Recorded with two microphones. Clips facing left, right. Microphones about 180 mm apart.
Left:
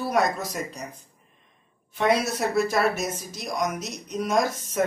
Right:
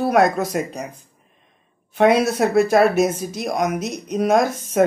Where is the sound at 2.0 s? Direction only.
60° right (ahead or behind).